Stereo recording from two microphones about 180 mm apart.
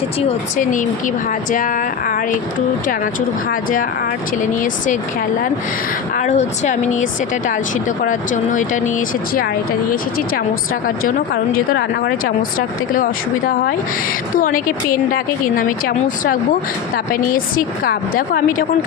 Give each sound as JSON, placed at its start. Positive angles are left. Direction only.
{"t": 0.2, "sound": "speech", "side_deg": 45}
{"t": 6.1, "sound": "speech", "side_deg": 40}
{"t": 11.5, "sound": "speech", "side_deg": 60}
{"t": 14.3, "sound": "speech", "side_deg": 50}